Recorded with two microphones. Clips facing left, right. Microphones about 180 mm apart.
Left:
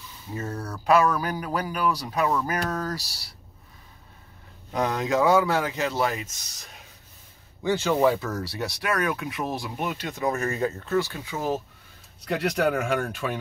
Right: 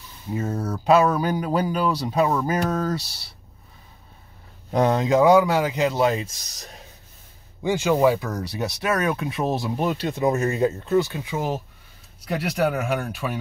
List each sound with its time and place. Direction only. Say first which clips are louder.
0.3 s speech: right 6 dB; 20° right (ahead or behind)
4.7 s speech: right 5 dB; 25° right (ahead or behind)
6.5 s speech: right 5 dB; 35° right (ahead or behind)
7.6 s speech: right 3 dB; 10° right (ahead or behind)